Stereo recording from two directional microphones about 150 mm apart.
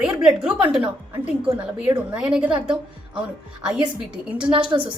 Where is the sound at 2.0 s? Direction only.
5° right (ahead or behind).